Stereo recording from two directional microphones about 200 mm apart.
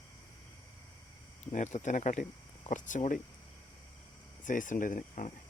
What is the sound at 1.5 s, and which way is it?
Speech, 35° left (ahead or behind).